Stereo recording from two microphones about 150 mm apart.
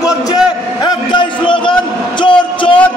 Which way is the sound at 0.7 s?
30° left (ahead or behind).